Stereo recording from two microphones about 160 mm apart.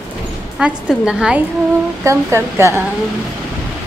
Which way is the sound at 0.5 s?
5° right (ahead or behind).